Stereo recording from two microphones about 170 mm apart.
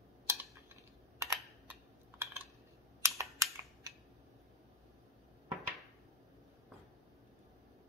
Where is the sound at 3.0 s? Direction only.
15° right (ahead or behind).